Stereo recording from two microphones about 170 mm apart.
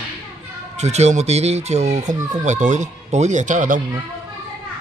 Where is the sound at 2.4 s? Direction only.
45° right (ahead or behind).